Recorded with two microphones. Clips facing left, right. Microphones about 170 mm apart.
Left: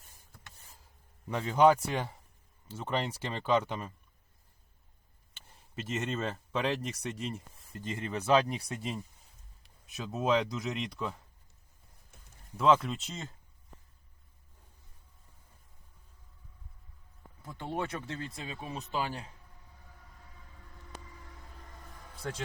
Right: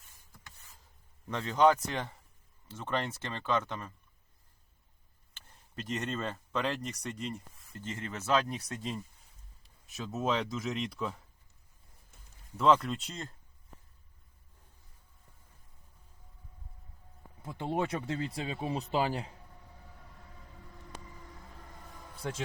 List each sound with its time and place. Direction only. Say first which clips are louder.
1.3 s speech: left 2 dB; 10° left (ahead or behind)
5.7 s speech: left 1 dB; 5° left (ahead or behind)
9.8 s speech: left 1 dB; centre (ahead or behind)
12.5 s speech: even; 5° left (ahead or behind)
17.4 s a man's voice: right 3 dB; 25° right (ahead or behind)
18.0 s a man's voice: right 5 dB; 30° right (ahead or behind)
22.2 s a man's voice: right 1 dB; 25° right (ahead or behind)